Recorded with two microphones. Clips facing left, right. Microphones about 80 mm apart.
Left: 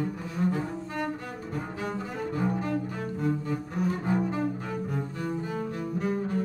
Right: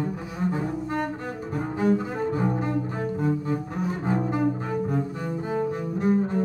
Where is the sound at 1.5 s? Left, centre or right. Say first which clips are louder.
Right 10 dB; right.